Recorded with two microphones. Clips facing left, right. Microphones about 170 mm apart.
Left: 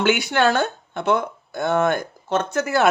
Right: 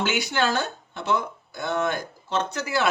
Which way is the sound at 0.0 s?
55° left (ahead or behind).